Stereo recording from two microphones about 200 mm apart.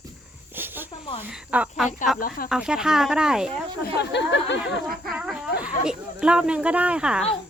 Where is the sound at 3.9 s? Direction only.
60° left (ahead or behind).